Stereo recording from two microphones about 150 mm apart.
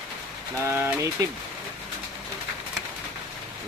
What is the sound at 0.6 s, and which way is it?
Speech, 15° right (ahead or behind).